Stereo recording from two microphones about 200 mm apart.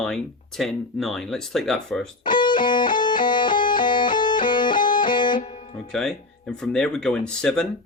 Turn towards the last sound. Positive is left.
turn(degrees=5)  # may be behind; listen again after turning